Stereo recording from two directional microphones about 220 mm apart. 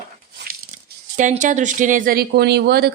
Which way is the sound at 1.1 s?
35° right (ahead or behind).